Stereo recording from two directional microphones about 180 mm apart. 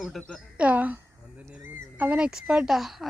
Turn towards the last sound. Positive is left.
turn(degrees=0)  # may be behind; listen again after turning